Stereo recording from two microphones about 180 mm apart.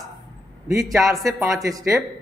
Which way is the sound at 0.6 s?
20° right (ahead or behind).